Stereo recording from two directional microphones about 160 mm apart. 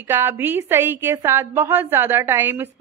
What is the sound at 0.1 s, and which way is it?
A woman's voice, 15° right (ahead or behind).